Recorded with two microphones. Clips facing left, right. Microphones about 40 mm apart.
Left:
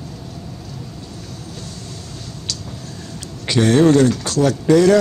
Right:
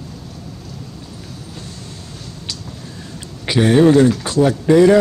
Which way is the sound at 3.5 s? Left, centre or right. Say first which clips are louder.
Right 1 dB; centre.